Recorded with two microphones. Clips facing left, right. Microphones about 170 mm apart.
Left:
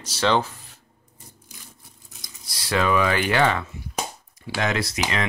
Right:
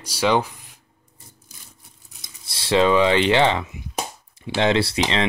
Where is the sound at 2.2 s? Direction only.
25° right (ahead or behind).